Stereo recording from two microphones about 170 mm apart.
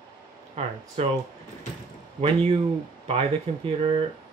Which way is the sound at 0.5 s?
40° right (ahead or behind).